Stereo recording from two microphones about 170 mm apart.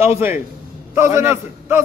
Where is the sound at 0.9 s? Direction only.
15° right (ahead or behind).